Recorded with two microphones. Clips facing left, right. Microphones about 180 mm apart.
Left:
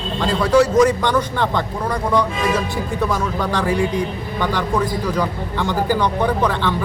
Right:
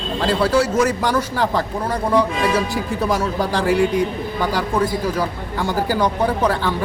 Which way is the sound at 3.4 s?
35° right (ahead or behind).